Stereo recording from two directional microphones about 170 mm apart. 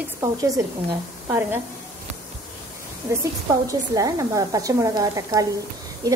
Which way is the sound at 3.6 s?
20° right (ahead or behind).